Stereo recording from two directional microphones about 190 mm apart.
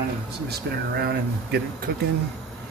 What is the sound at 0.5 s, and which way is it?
Speech, 55° right (ahead or behind).